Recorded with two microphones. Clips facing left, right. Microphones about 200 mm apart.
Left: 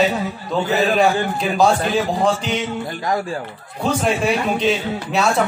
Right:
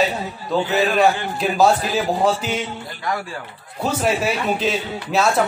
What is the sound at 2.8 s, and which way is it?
Speech, 40° left (ahead or behind).